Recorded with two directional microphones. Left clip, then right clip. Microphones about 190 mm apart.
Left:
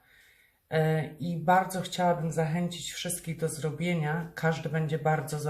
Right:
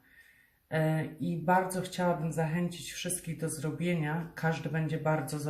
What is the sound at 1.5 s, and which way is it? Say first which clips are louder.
Speech: left 4 dB; 35° left (ahead or behind).